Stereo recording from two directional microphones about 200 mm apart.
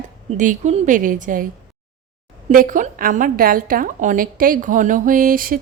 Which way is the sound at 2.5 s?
40° right (ahead or behind).